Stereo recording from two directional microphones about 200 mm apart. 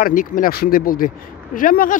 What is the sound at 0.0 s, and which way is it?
Speech, 45° left (ahead or behind).